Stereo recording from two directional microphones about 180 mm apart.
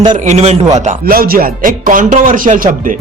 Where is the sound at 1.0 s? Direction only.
55° right (ahead or behind).